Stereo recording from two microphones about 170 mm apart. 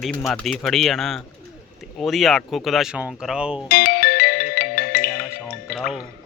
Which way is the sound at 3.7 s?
60° left (ahead or behind).